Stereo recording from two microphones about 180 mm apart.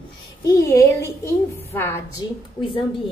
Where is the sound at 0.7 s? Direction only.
20° left (ahead or behind).